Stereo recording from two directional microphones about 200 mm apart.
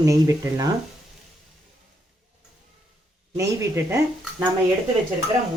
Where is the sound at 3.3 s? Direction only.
15° right (ahead or behind).